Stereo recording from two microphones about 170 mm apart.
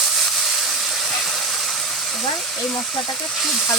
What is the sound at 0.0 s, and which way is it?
Steam, centre (ahead or behind).